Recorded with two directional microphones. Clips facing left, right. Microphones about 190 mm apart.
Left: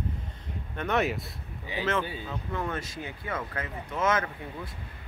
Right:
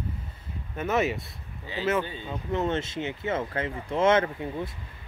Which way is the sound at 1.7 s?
15° left (ahead or behind).